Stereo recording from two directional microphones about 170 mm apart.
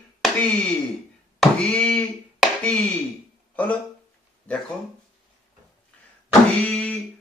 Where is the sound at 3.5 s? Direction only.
10° left (ahead or behind).